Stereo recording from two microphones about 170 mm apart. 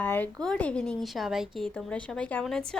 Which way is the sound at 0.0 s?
10° left (ahead or behind).